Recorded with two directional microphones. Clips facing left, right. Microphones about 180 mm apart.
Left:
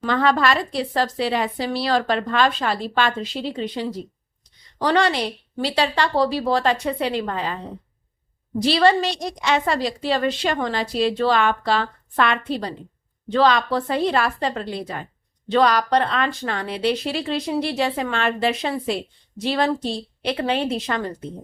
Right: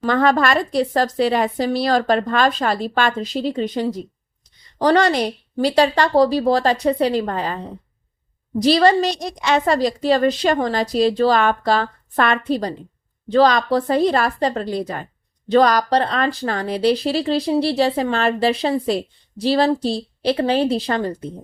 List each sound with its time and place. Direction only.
0.0 s speech: 45° right (ahead or behind)